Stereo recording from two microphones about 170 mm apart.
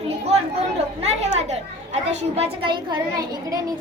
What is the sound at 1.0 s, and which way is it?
A woman's voice, 40° right (ahead or behind).